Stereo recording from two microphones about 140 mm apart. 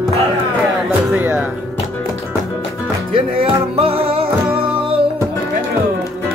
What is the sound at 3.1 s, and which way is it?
Music, 40° right (ahead or behind).